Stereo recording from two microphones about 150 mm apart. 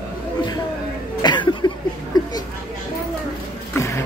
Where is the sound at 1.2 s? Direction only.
30° left (ahead or behind).